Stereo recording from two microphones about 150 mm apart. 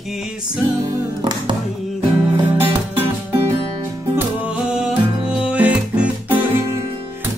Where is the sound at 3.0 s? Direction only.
40° right (ahead or behind).